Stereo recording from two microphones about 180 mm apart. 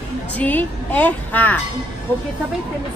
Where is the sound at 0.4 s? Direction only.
10° left (ahead or behind).